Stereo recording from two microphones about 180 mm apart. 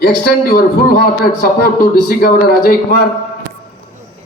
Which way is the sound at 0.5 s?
55° left (ahead or behind).